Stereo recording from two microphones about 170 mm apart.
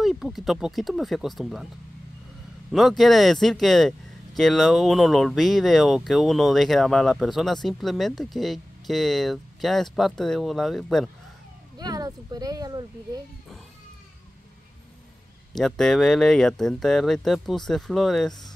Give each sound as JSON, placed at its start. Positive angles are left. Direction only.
{"t": 0.0, "sound": "speech", "side_deg": 0}
{"t": 2.7, "sound": "speech", "side_deg": 0}
{"t": 11.8, "sound": "speech", "side_deg": -25}
{"t": 15.5, "sound": "speech", "side_deg": 0}